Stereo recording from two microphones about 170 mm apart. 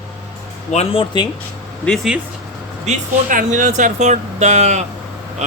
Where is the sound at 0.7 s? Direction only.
35° left (ahead or behind).